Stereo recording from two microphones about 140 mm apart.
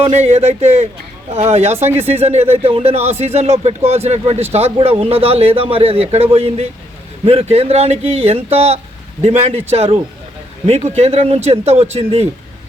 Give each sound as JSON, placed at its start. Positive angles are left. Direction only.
{"t": 0.0, "sound": "speech", "side_deg": -50}